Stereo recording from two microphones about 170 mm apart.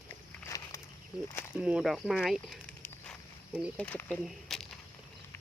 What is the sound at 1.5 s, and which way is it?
Speech, 5° right (ahead or behind).